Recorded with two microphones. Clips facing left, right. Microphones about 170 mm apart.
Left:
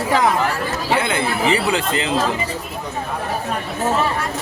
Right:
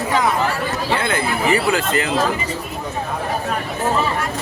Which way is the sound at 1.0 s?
20° left (ahead or behind).